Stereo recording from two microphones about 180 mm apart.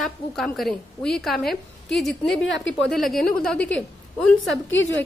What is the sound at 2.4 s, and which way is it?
Speech, 90° left.